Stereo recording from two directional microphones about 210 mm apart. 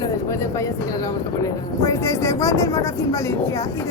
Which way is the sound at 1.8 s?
15° left (ahead or behind).